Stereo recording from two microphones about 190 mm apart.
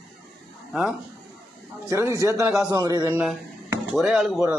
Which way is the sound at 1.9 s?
15° right (ahead or behind).